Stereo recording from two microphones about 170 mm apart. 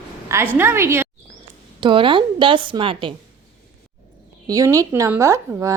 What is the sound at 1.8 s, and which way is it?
A woman's voice, 30° right (ahead or behind).